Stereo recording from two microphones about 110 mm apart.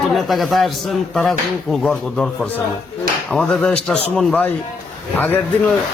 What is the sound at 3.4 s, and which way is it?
Speech, 10° left (ahead or behind).